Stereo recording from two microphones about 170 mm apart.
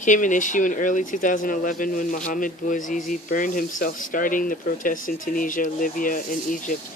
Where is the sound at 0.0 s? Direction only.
50° left (ahead or behind).